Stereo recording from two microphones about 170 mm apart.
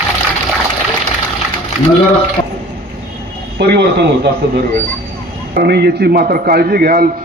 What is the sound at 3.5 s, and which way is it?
Speech, 80° right.